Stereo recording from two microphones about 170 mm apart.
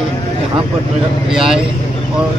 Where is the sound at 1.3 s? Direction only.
5° right (ahead or behind).